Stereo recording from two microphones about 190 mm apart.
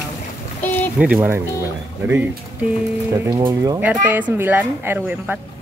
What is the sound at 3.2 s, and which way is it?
Speech, 25° right (ahead or behind).